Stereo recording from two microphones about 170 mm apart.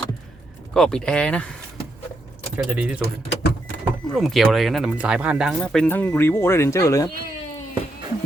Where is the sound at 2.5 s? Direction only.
5° right (ahead or behind).